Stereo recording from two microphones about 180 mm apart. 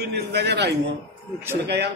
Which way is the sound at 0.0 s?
65° right (ahead or behind).